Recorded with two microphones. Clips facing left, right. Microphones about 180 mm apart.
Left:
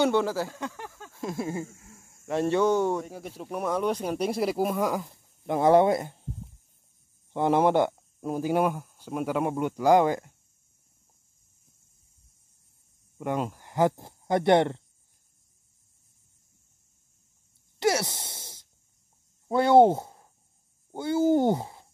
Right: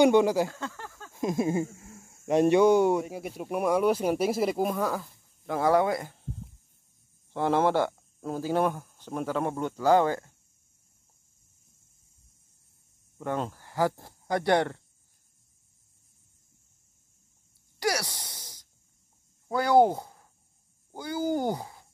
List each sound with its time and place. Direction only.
0.0 s speech: 15° right (ahead or behind)
0.5 s a sound: 15° left (ahead or behind)
1.1 s speech: 15° right (ahead or behind); by 4.7 s centre (ahead or behind)
4.7 s speech: 15° left (ahead or behind)
7.3 s speech: 15° left (ahead or behind)
13.2 s speech: 15° left (ahead or behind)
17.7 s a sound: 25° left (ahead or behind)
19.4 s speech: 25° left (ahead or behind)